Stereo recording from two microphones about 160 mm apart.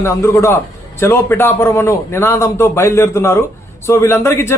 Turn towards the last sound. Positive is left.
turn(degrees=15)  # may be behind; listen again after turning